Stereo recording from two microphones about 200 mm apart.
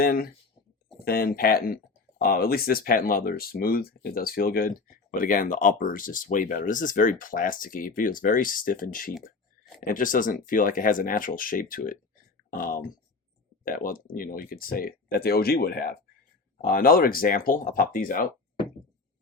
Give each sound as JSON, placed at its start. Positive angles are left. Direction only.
{"t": 0.0, "sound": "speech", "side_deg": 50}